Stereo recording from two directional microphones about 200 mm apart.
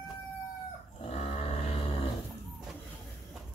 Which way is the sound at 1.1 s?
30° left (ahead or behind).